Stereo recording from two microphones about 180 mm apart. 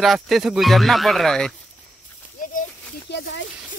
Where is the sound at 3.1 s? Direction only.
75° left (ahead or behind).